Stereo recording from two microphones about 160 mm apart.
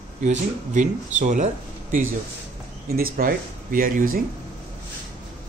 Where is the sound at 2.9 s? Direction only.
65° right (ahead or behind).